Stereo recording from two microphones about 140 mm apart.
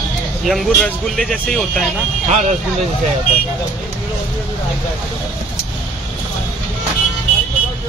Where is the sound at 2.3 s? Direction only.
55° right (ahead or behind).